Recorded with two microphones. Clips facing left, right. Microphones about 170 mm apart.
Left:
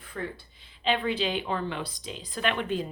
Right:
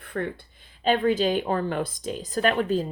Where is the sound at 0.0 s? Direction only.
60° right (ahead or behind).